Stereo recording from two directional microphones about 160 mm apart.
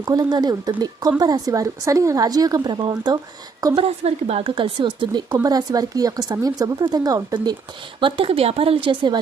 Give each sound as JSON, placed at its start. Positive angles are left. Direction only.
{"t": 0.0, "sound": "a woman's voice", "side_deg": -25}
{"t": 3.8, "sound": "a woman's voice", "side_deg": -40}
{"t": 8.0, "sound": "a woman's voice", "side_deg": -35}